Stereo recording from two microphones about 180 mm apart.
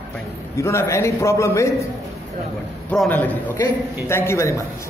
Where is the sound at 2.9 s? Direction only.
5° left (ahead or behind).